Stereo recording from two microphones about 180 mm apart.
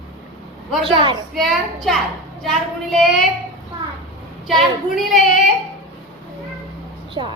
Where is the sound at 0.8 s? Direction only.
25° right (ahead or behind).